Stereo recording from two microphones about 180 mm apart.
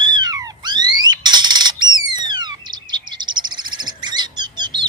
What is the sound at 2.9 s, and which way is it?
Bird, 25° right (ahead or behind).